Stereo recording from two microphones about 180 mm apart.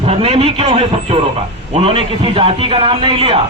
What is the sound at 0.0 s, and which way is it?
A man's voice, 30° right (ahead or behind).